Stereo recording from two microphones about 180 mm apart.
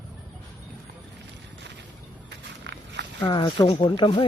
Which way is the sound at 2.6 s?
70° right (ahead or behind).